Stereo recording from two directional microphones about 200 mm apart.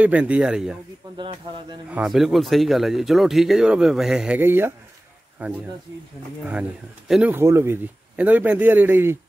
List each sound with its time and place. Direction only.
0.0 s speech: 5° right (ahead or behind)
1.1 s speech: 25° right (ahead or behind)
1.9 s a man's voice: 5° right (ahead or behind)
7.1 s a man's voice: 5° right (ahead or behind)